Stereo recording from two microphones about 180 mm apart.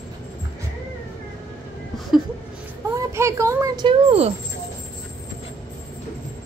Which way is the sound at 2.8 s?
15° right (ahead or behind).